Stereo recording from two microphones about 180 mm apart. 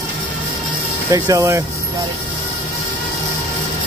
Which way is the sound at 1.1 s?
15° right (ahead or behind).